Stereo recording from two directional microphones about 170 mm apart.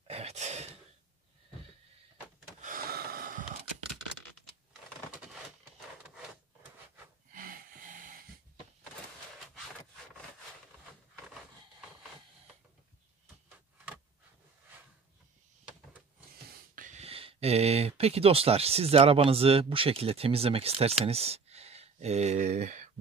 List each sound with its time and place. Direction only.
0.0 s gasp: 35° right (ahead or behind)
2.6 s gasp: 55° right (ahead or behind)
7.3 s snort: 55° right (ahead or behind)
16.7 s speech: 45° right (ahead or behind)